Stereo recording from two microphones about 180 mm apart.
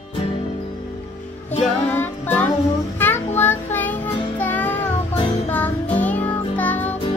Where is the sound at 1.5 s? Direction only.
40° left (ahead or behind).